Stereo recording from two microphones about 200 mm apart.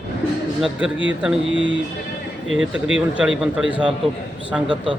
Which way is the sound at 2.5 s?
5° right (ahead or behind).